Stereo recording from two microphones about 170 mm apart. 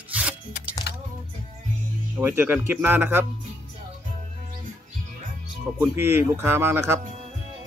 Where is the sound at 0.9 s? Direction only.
80° left.